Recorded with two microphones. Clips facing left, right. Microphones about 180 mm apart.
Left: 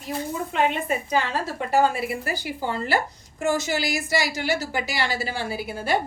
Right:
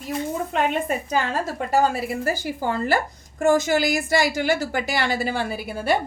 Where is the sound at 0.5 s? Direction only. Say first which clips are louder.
Even; 45° right (ahead or behind).